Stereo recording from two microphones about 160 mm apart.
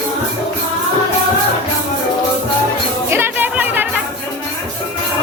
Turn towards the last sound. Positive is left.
turn(degrees=-10)  # may be behind; listen again after turning